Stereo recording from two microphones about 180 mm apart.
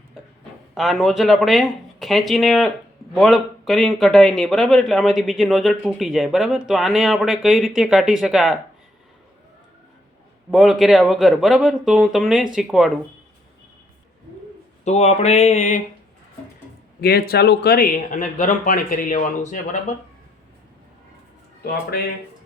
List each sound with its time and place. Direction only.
0.7 s speech: centre (ahead or behind)
10.5 s speech: centre (ahead or behind)
14.8 s a sound: 35° left (ahead or behind)
17.0 s speech: 60° left (ahead or behind)
18.1 s speech: 45° left (ahead or behind)
21.6 s speech: 60° left (ahead or behind)